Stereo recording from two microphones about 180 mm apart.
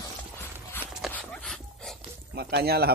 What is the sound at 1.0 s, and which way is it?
Dog, 5° left (ahead or behind).